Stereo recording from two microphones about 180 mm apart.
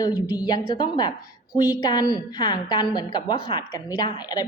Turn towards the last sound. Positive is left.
turn(degrees=20)  # may be behind; listen again after turning